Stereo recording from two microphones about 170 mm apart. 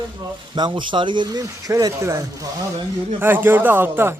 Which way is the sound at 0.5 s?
25° right (ahead or behind).